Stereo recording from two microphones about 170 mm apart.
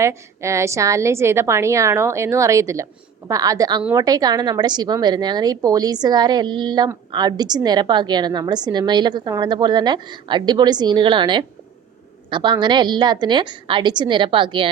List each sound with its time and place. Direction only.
0.0 s a woman's voice: 15° right (ahead or behind)